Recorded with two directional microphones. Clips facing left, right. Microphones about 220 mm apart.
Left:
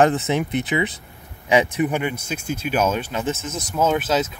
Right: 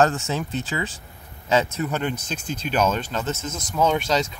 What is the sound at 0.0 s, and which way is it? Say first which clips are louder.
Speech: left 3 dB; 15° left (ahead or behind).